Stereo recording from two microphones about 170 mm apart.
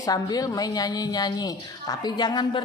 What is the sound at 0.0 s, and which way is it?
A man's voice, 20° left (ahead or behind).